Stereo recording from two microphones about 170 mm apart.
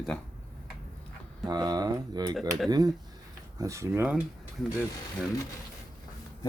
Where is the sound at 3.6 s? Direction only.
15° right (ahead or behind).